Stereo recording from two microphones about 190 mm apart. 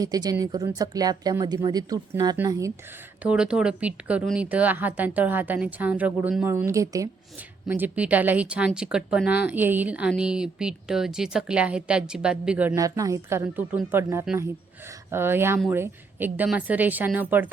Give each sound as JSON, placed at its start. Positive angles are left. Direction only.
{"t": 0.0, "sound": "speech", "side_deg": -20}
{"t": 3.2, "sound": "a woman's voice", "side_deg": -5}